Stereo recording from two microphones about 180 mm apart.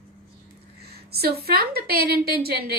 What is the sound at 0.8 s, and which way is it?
A woman's voice, 60° right (ahead or behind).